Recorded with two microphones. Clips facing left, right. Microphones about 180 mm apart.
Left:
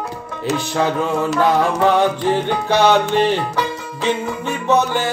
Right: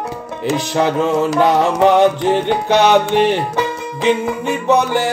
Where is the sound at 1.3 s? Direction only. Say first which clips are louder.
Right 1 dB; 20° right (ahead or behind).